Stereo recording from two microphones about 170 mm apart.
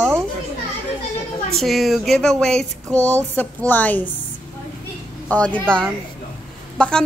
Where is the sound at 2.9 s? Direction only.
15° right (ahead or behind).